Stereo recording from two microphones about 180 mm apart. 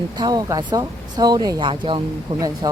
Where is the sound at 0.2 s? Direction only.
20° right (ahead or behind).